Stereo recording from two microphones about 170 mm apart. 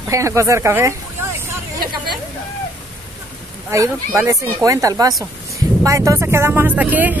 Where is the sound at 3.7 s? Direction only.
15° right (ahead or behind).